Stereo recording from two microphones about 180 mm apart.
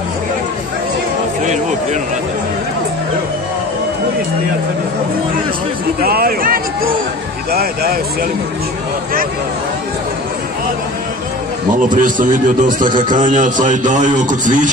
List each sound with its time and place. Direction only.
1.4 s speech: 40° right (ahead or behind)
5.9 s speech: 55° right (ahead or behind)
11.9 s a man's voice: 50° right (ahead or behind)